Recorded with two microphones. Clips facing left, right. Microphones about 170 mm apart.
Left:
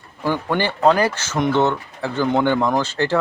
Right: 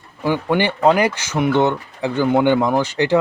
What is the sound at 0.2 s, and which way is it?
Speech, 10° right (ahead or behind).